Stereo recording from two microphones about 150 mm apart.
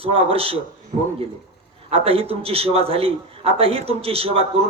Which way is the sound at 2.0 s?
40° right (ahead or behind).